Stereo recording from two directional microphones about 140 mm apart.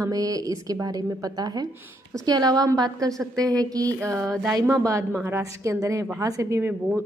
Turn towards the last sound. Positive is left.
turn(degrees=-15)  # may be behind; listen again after turning